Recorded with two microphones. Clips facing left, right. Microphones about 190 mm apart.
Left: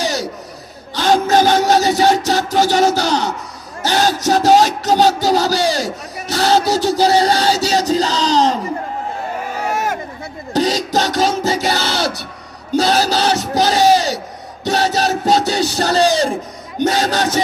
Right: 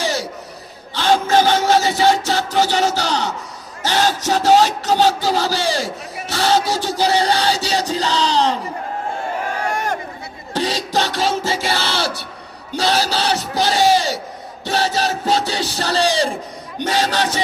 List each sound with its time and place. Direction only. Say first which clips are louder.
1.0 s music: left 2 dB; 40° left (ahead or behind)
3.9 s speech: left 3 dB; 40° left (ahead or behind)
9.6 s run: left 4 dB; 5° left (ahead or behind)
10.5 s music: left 4 dB; 40° left (ahead or behind)
12.7 s speech: left 4 dB; 45° left (ahead or behind)